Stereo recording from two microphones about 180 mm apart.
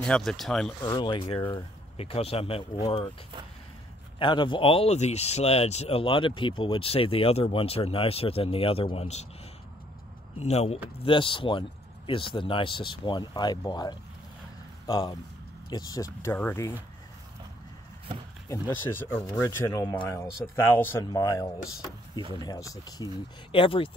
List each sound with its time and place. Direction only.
0.0 s speech: 5° left (ahead or behind)
0.8 s speech: 25° left (ahead or behind)
4.2 s speech: 25° left (ahead or behind)
10.4 s speech: 35° left (ahead or behind); by 16.7 s 15° left (ahead or behind)
18.5 s speech: 10° left (ahead or behind); by 23.9 s 30° left (ahead or behind)